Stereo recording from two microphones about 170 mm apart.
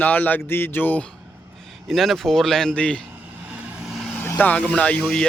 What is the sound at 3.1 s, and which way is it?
Vehicle, 10° right (ahead or behind).